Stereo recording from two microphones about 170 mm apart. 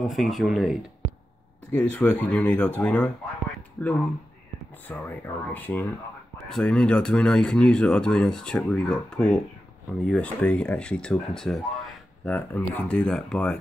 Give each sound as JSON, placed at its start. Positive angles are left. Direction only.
{"t": 0.0, "sound": "speech", "side_deg": 0}